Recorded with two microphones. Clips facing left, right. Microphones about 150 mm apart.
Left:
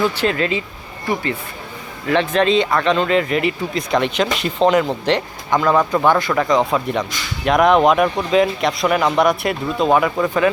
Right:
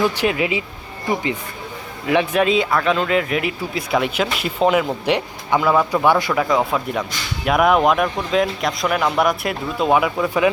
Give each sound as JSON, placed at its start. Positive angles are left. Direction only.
{"t": 0.0, "sound": "speech", "side_deg": -15}